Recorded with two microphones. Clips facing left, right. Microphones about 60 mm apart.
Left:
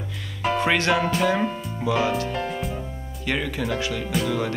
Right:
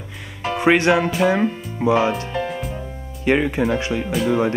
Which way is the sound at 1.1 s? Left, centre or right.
Centre.